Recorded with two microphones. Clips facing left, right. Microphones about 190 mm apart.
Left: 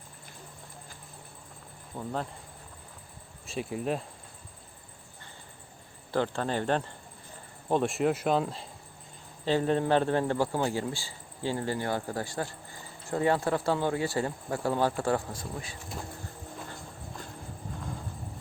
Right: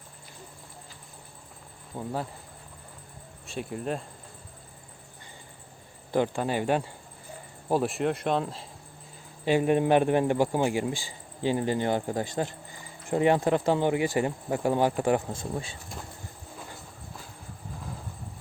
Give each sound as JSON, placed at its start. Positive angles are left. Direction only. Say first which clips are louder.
{"t": 1.9, "sound": "a man's voice", "louder": "right 2 dB", "side_deg": -10}
{"t": 3.4, "sound": "speech", "louder": "left 1 dB", "side_deg": 0}
{"t": 6.1, "sound": "a man's voice", "louder": "right 3 dB", "side_deg": -15}
{"t": 9.4, "sound": "a man's voice", "louder": "right 3 dB", "side_deg": -15}